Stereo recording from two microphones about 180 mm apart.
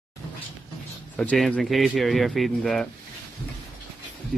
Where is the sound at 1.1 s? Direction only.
5° left (ahead or behind).